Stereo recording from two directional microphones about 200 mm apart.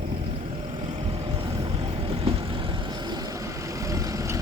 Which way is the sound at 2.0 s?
30° right (ahead or behind).